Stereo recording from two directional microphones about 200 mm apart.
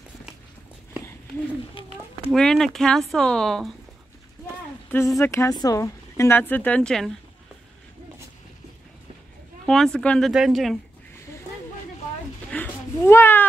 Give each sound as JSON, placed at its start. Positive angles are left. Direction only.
{"t": 1.8, "sound": "speech", "side_deg": 25}
{"t": 2.3, "sound": "speech", "side_deg": 0}
{"t": 4.8, "sound": "a sound", "side_deg": 10}
{"t": 5.2, "sound": "speech", "side_deg": 15}
{"t": 9.7, "sound": "speech", "side_deg": 5}
{"t": 12.4, "sound": "cat", "side_deg": 10}